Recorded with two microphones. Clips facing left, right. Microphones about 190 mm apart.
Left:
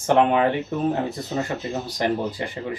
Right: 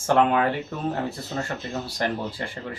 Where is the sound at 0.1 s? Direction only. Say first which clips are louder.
Left 2 dB; 20° left (ahead or behind).